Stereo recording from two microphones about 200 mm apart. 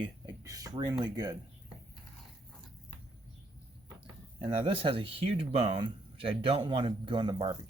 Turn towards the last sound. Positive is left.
turn(degrees=-25)  # may be behind; listen again after turning